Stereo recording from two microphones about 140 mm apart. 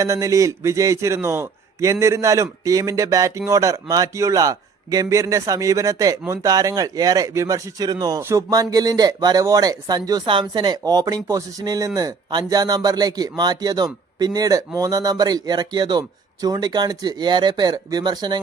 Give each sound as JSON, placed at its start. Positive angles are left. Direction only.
{"t": 0.0, "sound": "a man's voice", "side_deg": -25}